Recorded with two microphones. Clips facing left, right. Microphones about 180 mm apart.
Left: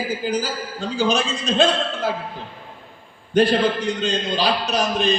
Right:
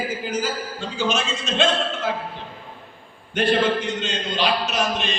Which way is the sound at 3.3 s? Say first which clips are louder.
Left 3 dB; 35° left (ahead or behind).